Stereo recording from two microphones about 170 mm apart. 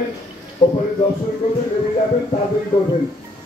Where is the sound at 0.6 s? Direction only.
25° left (ahead or behind).